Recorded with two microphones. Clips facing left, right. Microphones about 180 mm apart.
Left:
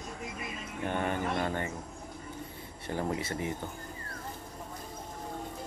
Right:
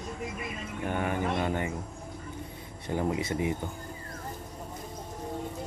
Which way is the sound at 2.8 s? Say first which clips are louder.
Right 3 dB; 15° right (ahead or behind).